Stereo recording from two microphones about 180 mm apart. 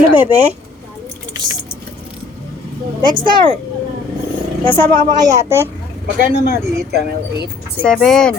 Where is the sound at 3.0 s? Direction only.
25° right (ahead or behind).